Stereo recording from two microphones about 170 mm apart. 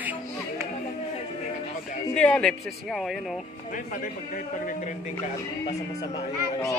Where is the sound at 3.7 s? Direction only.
50° left (ahead or behind).